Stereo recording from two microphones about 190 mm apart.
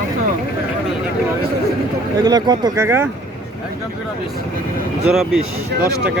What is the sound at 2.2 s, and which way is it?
Speech, 20° right (ahead or behind).